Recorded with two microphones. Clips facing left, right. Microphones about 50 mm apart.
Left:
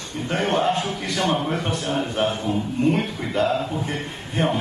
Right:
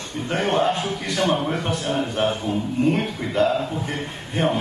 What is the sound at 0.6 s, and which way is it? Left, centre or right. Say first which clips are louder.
A man's voice: even; centre.